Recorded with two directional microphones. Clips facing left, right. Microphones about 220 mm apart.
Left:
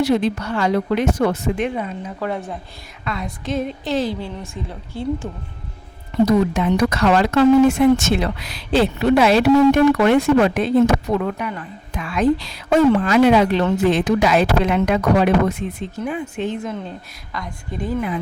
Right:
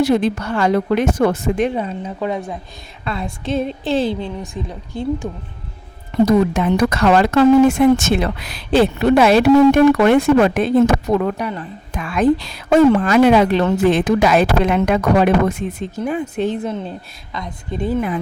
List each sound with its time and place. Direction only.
0.0 s speech: 50° right (ahead or behind); by 2.1 s 30° right (ahead or behind)
2.1 s speech: 15° right (ahead or behind)
3.0 s a woman's voice: 30° right (ahead or behind)
6.2 s speech: 50° right (ahead or behind); by 11.6 s 35° right (ahead or behind)
11.9 s speech: 50° right (ahead or behind)
16.0 s a woman's voice: 40° right (ahead or behind)